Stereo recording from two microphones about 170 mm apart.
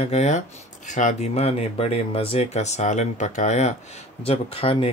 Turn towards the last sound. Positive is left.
turn(degrees=35)  # may be behind; listen again after turning